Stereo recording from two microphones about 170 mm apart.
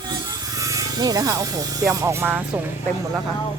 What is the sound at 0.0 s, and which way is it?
Speech, 25° right (ahead or behind).